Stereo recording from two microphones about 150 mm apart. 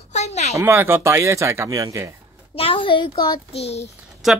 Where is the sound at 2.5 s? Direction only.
35° left (ahead or behind).